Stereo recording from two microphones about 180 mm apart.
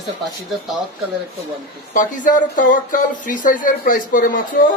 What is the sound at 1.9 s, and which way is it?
Speech, 45° left (ahead or behind).